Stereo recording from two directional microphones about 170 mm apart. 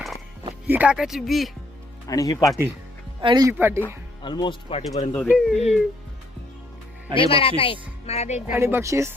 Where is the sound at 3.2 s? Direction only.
25° right (ahead or behind).